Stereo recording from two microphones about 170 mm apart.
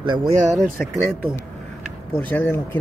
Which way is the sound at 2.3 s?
10° left (ahead or behind).